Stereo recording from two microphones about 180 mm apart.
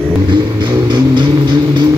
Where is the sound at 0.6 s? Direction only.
25° right (ahead or behind).